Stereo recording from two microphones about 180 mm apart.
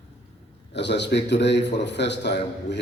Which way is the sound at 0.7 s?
75° left (ahead or behind).